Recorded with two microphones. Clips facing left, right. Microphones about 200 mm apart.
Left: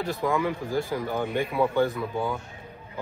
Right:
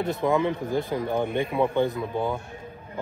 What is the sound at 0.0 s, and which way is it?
A man's voice, 20° right (ahead or behind).